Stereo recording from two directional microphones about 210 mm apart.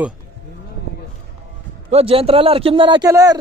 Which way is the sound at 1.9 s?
25° right (ahead or behind).